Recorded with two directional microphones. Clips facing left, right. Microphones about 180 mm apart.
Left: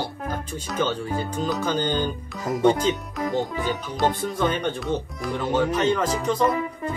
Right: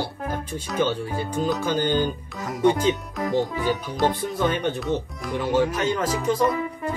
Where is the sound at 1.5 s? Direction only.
10° right (ahead or behind).